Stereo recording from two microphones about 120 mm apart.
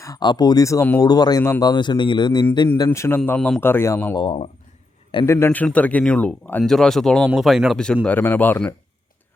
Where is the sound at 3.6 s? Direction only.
20° left (ahead or behind).